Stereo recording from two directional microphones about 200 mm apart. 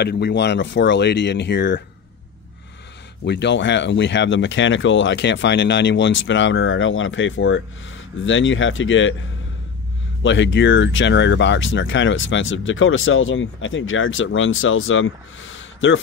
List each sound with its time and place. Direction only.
0.0 s speech: 55° left (ahead or behind)
3.3 s speech: 60° left (ahead or behind)
10.2 s speech: 65° left (ahead or behind)